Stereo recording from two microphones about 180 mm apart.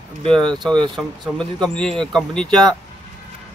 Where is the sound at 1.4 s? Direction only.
5° left (ahead or behind).